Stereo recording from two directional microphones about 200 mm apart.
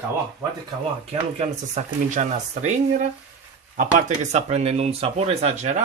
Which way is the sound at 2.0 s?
35° right (ahead or behind).